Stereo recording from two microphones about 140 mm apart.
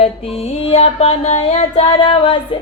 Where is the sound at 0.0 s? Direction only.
45° left (ahead or behind).